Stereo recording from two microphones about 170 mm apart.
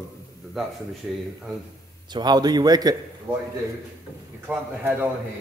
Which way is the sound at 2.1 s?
25° right (ahead or behind).